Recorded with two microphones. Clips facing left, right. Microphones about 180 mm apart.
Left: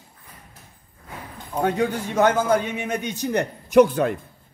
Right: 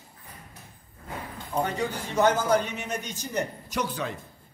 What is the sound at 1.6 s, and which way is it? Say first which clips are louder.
A man's voice: left 8 dB; 55° left (ahead or behind).